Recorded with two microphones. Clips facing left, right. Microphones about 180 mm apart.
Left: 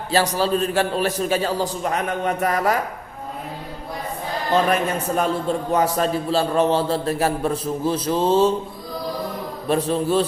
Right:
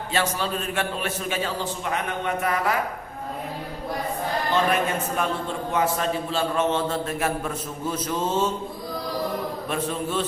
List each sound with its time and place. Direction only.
0.1 s a man's voice: 35° left (ahead or behind)
5.1 s a man's voice: 40° left (ahead or behind)
9.6 s a man's voice: 35° left (ahead or behind)